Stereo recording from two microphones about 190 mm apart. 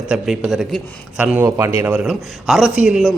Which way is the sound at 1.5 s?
15° right (ahead or behind).